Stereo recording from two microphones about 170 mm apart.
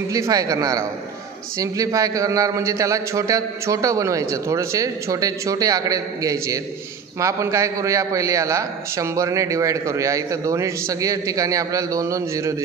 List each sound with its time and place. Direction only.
0.1 s a man's voice: 20° right (ahead or behind)